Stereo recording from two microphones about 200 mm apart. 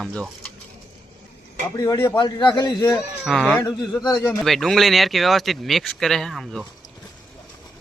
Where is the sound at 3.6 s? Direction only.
20° left (ahead or behind).